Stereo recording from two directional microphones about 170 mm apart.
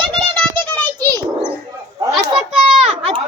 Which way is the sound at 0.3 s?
10° left (ahead or behind).